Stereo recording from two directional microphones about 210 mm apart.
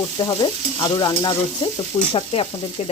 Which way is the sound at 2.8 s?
30° left (ahead or behind).